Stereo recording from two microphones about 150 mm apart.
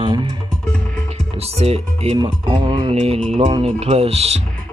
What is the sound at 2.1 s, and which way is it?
Speech, 30° right (ahead or behind).